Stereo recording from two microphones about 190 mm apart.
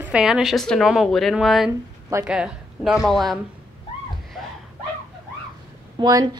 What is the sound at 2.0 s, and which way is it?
Speech, 15° right (ahead or behind).